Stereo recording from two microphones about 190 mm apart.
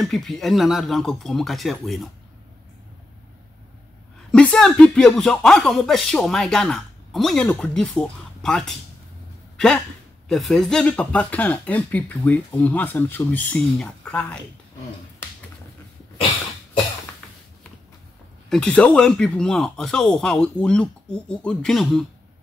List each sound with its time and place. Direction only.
0.0 s speech: centre (ahead or behind)
4.3 s speech: 5° left (ahead or behind)
18.5 s speech: 5° left (ahead or behind)